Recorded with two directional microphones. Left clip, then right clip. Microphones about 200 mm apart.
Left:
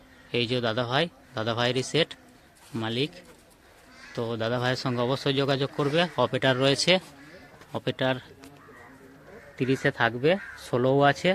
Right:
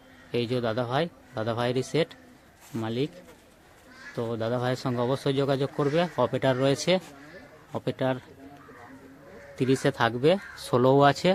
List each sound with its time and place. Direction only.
0.3 s a man's voice: centre (ahead or behind)
9.6 s speech: 15° right (ahead or behind)